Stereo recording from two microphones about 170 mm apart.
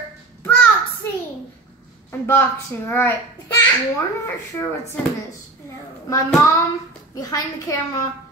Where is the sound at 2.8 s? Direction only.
15° left (ahead or behind).